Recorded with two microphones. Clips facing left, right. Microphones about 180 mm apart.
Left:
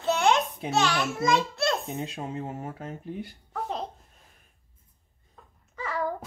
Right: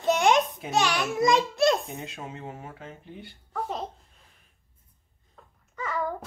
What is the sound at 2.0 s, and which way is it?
Speech, 35° left (ahead or behind).